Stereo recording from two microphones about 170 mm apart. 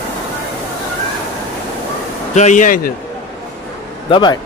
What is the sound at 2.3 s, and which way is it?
Speech, 45° left (ahead or behind).